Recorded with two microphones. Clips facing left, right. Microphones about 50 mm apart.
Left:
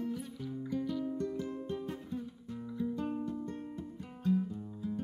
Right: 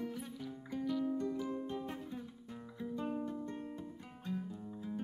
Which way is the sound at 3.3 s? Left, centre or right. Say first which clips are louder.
Left 2 dB; centre.